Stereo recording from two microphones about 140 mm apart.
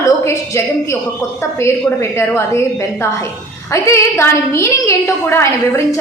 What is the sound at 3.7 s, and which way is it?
A woman's voice, 20° left (ahead or behind).